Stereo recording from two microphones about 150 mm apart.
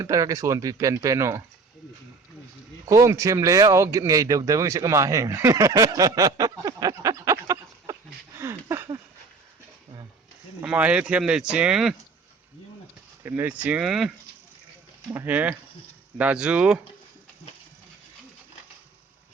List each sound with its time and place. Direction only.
0.0 s speech: 20° right (ahead or behind)
2.8 s speech: 20° right (ahead or behind)
8.4 s a sound: 15° right (ahead or behind)
10.6 s speech: 10° right (ahead or behind)
13.2 s speech: 15° right (ahead or behind)
15.1 s speech: 10° right (ahead or behind)